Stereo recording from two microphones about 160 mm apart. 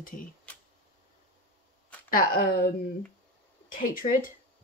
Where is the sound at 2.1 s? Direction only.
65° left (ahead or behind).